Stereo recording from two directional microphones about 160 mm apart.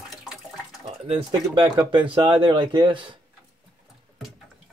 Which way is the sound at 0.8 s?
35° right (ahead or behind).